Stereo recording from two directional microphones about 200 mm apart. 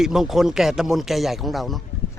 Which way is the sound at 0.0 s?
Centre (ahead or behind).